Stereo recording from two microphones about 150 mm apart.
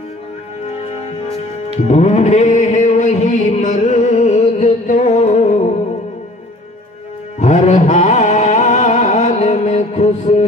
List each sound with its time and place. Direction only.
1.9 s music: 50° left (ahead or behind)
7.3 s music: 50° left (ahead or behind)